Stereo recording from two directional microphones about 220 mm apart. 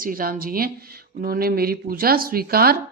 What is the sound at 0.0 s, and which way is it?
Speech, 40° right (ahead or behind).